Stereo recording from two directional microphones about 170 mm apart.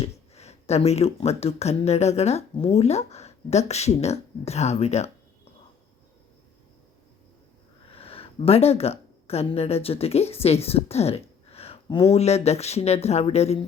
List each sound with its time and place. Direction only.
0.0 s speech: 40° left (ahead or behind)
7.9 s speech: 35° left (ahead or behind)
12.1 s speech: 40° left (ahead or behind)